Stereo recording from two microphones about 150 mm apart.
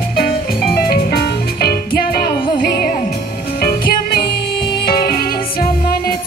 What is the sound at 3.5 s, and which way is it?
Music, 90° left.